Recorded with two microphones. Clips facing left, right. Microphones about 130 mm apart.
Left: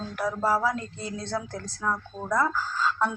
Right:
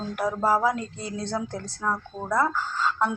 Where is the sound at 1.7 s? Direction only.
5° right (ahead or behind).